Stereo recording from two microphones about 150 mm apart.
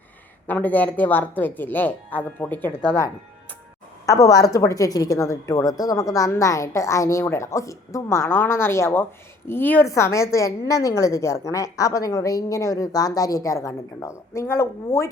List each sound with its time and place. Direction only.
0.4 s a woman's voice: 10° left (ahead or behind)